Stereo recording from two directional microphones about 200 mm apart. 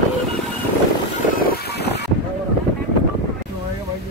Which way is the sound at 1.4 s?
55° left (ahead or behind).